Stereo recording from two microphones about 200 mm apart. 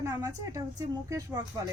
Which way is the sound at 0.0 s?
15° right (ahead or behind).